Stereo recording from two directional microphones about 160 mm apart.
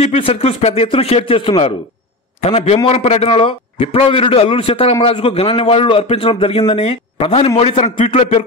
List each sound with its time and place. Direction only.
0.0 s a man's voice: 35° left (ahead or behind)